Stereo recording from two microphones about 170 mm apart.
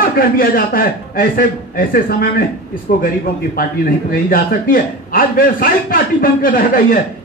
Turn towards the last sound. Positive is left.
turn(degrees=55)  # may be behind; listen again after turning